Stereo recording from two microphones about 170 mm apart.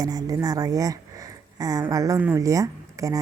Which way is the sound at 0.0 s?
20° right (ahead or behind).